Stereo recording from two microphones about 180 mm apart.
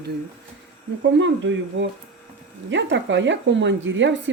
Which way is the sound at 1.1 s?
90° right.